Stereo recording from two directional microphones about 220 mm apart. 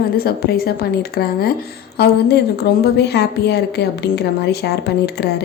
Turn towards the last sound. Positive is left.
turn(degrees=50)  # may be behind; listen again after turning